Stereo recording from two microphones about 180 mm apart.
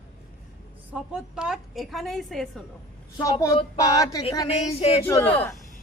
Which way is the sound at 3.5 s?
25° left (ahead or behind).